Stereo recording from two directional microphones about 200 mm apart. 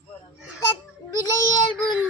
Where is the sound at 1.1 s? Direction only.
20° left (ahead or behind).